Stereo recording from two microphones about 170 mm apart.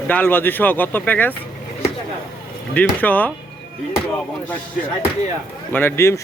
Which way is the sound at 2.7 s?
10° left (ahead or behind).